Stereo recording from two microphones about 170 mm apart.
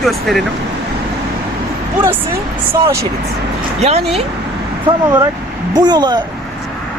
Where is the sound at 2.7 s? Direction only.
15° right (ahead or behind).